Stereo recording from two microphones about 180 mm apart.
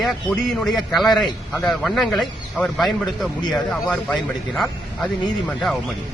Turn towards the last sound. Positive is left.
turn(degrees=0)  # may be behind; listen again after turning